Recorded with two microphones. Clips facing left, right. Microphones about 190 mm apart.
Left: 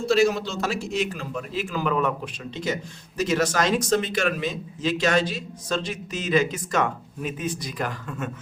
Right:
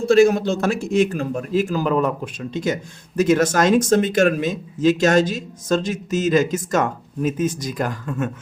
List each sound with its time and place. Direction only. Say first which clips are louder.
0.0 s a man's voice: right 6 dB; 50° right (ahead or behind)